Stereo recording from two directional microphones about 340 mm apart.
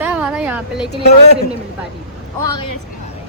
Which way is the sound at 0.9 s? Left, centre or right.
Left.